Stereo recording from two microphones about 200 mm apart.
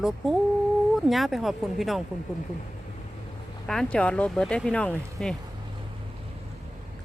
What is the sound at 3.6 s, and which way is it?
Speech, 5° left (ahead or behind).